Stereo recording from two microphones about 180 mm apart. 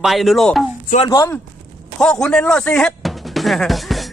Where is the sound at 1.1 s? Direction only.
15° left (ahead or behind).